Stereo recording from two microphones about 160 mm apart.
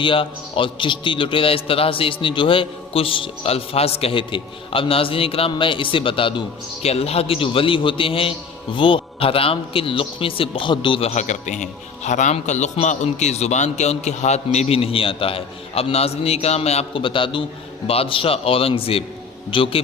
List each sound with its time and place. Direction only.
0.0 s a man's voice: 35° left (ahead or behind)